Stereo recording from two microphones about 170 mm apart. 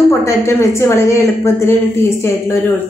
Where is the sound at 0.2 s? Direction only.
15° left (ahead or behind).